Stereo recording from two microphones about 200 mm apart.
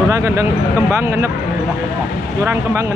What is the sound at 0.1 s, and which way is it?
A man's voice, 15° right (ahead or behind).